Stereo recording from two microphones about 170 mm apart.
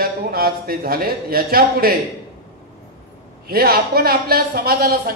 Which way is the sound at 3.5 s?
65° right (ahead or behind).